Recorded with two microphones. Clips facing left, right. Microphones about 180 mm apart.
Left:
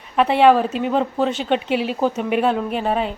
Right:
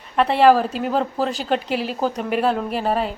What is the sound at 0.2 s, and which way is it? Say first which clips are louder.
A woman's voice: left 1 dB; centre (ahead or behind).